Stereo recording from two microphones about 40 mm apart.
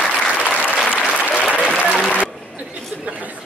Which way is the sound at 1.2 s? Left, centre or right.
Left.